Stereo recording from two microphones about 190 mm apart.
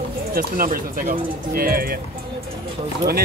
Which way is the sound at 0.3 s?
50° right (ahead or behind).